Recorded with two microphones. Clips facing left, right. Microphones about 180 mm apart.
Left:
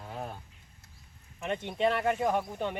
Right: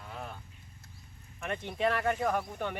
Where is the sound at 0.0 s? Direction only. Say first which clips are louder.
Left 3 dB; 30° left (ahead or behind).